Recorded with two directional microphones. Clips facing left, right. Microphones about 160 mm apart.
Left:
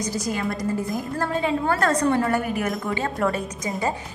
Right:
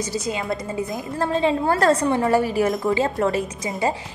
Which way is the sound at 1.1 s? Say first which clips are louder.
Right 4 dB; 25° right (ahead or behind).